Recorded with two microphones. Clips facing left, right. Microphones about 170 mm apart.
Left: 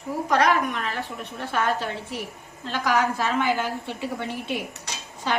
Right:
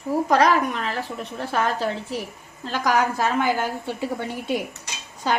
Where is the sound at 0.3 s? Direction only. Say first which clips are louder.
Right 1 dB; 35° right (ahead or behind).